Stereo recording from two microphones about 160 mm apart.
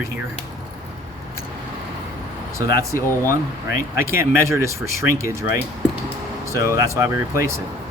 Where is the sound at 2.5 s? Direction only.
20° right (ahead or behind).